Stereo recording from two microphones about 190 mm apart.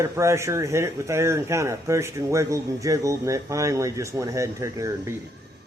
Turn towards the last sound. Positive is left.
turn(degrees=-15)  # may be behind; listen again after turning